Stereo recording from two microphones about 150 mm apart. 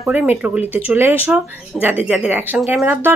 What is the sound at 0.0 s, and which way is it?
Speech, 10° right (ahead or behind).